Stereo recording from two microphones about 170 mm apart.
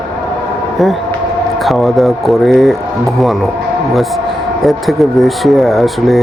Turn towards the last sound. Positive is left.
turn(degrees=0)  # may be behind; listen again after turning